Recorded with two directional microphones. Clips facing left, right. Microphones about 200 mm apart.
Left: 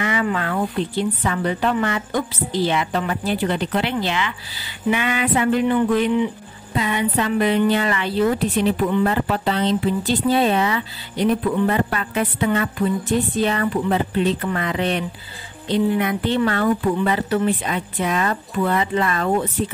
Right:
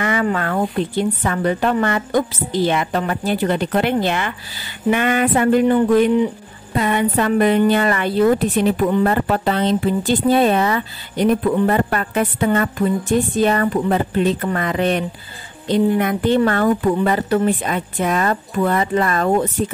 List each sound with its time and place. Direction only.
0.0 s speech: 45° right (ahead or behind)